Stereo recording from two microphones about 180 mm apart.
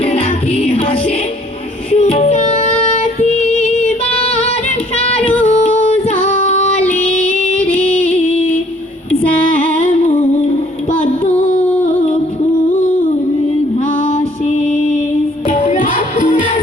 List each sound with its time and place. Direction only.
0.0 s music: 35° left (ahead or behind)
4.9 s child singing: 35° left (ahead or behind)
5.5 s a sound: 35° left (ahead or behind)
7.3 s music: 45° left (ahead or behind)
13.9 s music: 40° left (ahead or behind)